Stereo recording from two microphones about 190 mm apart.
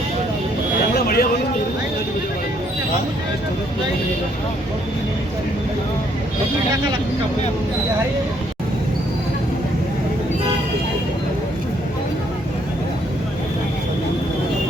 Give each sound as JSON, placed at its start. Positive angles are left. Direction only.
{"t": 0.9, "sound": "vehicle", "side_deg": 55}